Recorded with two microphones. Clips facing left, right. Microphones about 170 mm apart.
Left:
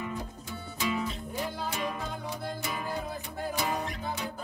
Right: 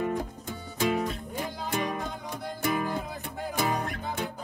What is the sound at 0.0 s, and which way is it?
Music, 50° right (ahead or behind).